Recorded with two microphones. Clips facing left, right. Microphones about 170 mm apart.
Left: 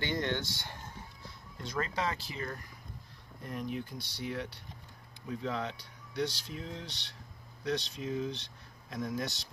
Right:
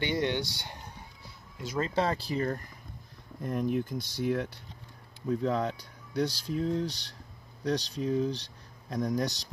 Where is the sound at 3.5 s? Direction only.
50° right (ahead or behind).